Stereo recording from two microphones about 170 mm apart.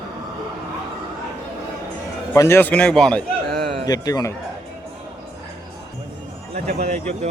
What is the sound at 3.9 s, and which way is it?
Speech, 20° left (ahead or behind).